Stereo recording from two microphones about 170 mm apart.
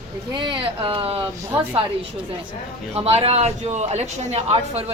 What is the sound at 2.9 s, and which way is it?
A man's voice, 35° right (ahead or behind).